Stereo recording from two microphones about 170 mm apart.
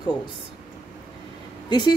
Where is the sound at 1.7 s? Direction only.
25° left (ahead or behind).